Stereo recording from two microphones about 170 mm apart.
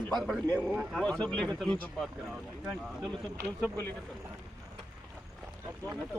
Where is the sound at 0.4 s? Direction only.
10° left (ahead or behind).